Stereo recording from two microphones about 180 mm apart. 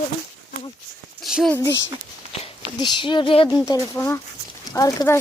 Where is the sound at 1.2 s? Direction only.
Centre (ahead or behind).